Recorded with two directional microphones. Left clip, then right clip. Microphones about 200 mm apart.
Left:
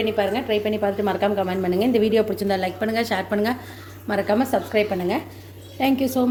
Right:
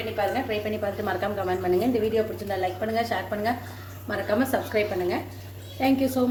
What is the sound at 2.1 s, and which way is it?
Speech, 50° left (ahead or behind).